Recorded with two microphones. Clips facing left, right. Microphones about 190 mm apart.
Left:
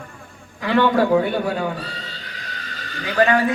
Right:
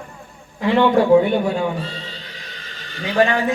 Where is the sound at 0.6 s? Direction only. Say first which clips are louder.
Right 2 dB; 25° right (ahead or behind).